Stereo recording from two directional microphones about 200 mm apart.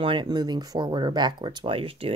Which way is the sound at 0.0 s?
25° right (ahead or behind).